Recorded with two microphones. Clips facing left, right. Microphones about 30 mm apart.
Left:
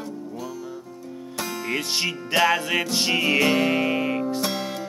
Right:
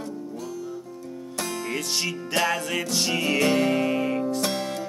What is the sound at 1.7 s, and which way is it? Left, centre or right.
Music, left.